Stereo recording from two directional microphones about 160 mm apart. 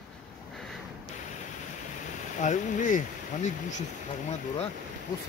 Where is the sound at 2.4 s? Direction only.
50° left (ahead or behind).